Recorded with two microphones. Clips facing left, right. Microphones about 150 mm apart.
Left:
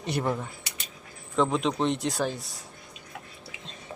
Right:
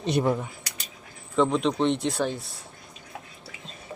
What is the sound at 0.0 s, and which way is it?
Speech, 20° right (ahead or behind).